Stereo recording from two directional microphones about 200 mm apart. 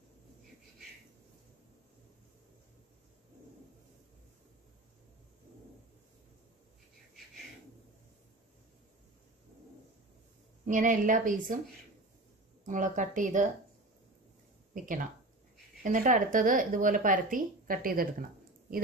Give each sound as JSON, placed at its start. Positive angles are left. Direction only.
{"t": 10.6, "sound": "speech", "side_deg": -40}
{"t": 12.6, "sound": "speech", "side_deg": -40}
{"t": 14.7, "sound": "speech", "side_deg": -40}